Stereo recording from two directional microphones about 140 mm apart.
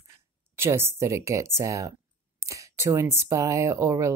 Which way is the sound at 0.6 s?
20° right (ahead or behind).